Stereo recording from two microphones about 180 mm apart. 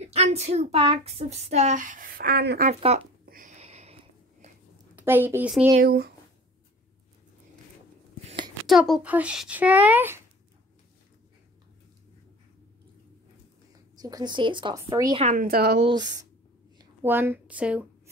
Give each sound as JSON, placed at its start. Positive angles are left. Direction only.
{"t": 0.0, "sound": "speech", "side_deg": -35}
{"t": 2.7, "sound": "speech", "side_deg": -35}
{"t": 3.3, "sound": "a sound", "side_deg": -45}
{"t": 4.9, "sound": "a woman's voice", "side_deg": -10}
{"t": 5.8, "sound": "a woman's voice", "side_deg": -60}
{"t": 8.6, "sound": "speech", "side_deg": 0}
{"t": 13.9, "sound": "a woman's voice", "side_deg": -20}
{"t": 15.3, "sound": "a woman's voice", "side_deg": -60}
{"t": 15.8, "sound": "a woman's voice", "side_deg": -25}
{"t": 17.0, "sound": "speech", "side_deg": -10}